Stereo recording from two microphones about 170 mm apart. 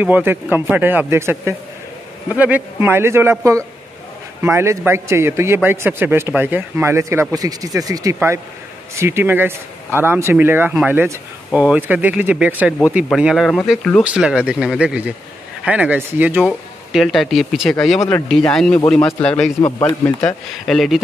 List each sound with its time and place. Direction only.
0.0 s speech: 10° right (ahead or behind)
16.3 s a man's voice: centre (ahead or behind)